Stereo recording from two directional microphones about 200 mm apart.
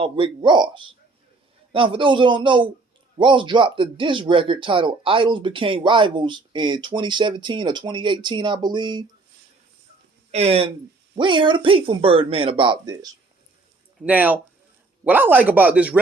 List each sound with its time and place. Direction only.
0.0 s speech: 25° right (ahead or behind)
10.3 s speech: 30° right (ahead or behind)
14.0 s speech: 10° right (ahead or behind)